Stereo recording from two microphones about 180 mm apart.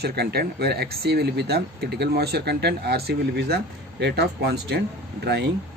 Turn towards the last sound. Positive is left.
turn(degrees=-70)  # may be behind; listen again after turning